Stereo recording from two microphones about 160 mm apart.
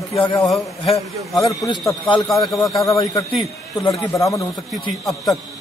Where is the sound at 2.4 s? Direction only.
20° left (ahead or behind).